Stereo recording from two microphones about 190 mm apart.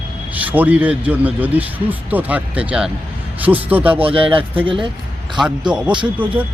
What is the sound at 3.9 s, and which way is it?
Speech, 30° right (ahead or behind).